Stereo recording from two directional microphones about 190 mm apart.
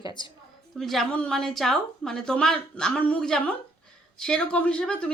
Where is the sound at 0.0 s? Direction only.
25° left (ahead or behind).